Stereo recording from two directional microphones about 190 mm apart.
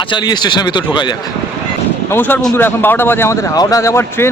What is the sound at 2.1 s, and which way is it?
Speech, 10° left (ahead or behind).